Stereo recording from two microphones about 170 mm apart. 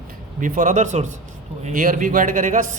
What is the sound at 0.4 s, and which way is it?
Speech, 50° right (ahead or behind).